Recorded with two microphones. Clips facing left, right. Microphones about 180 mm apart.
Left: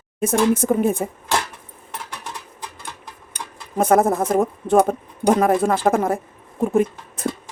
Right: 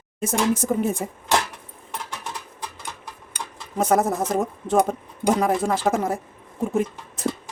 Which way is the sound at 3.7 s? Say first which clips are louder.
Left 4 dB; 55° left (ahead or behind).